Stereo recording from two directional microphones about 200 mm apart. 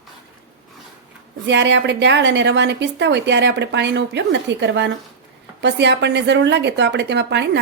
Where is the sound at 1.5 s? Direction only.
60° right (ahead or behind).